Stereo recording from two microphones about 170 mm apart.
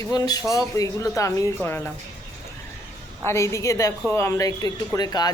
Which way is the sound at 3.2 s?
15° left (ahead or behind).